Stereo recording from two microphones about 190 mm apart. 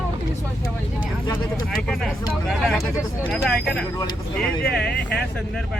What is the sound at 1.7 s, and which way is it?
Speech, centre (ahead or behind).